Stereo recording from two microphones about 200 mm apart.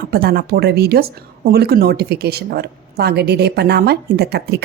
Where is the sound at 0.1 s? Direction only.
50° right (ahead or behind).